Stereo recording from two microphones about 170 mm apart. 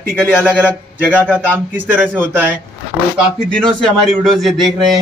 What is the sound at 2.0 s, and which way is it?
A man's voice, 5° left (ahead or behind).